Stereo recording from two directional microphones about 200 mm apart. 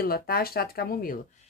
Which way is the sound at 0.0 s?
50° left (ahead or behind).